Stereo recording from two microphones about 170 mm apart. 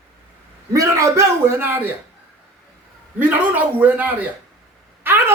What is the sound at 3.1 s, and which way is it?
A woman's voice, 10° right (ahead or behind).